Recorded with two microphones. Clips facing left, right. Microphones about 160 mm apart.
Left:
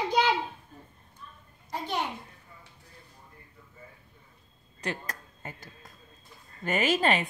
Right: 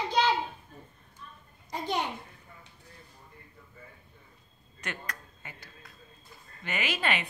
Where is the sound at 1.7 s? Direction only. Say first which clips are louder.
Right 1 dB; 15° right (ahead or behind).